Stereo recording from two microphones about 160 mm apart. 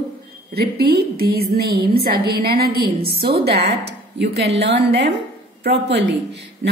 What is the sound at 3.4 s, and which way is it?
Speech, 90° right.